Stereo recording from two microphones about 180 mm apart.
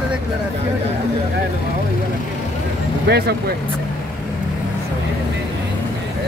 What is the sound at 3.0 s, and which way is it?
Speech, 65° right (ahead or behind).